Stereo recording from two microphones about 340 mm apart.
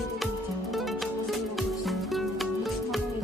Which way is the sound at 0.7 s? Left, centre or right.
Centre.